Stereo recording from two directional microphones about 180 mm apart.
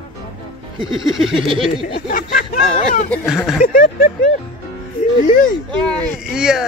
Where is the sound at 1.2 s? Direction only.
Centre (ahead or behind).